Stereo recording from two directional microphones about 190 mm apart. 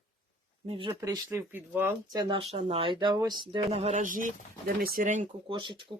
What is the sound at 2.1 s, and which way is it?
Speech, 25° right (ahead or behind).